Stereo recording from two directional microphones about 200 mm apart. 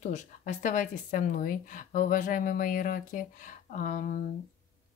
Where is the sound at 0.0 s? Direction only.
35° left (ahead or behind).